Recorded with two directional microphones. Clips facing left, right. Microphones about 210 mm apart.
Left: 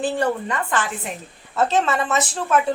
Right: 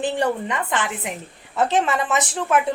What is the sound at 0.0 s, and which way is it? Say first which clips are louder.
A woman's voice: even; 20° right (ahead or behind).